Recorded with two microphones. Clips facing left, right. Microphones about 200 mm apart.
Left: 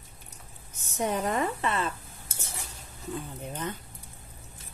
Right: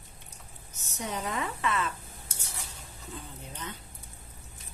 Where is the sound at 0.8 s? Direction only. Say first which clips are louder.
Left 6 dB; 55° left (ahead or behind).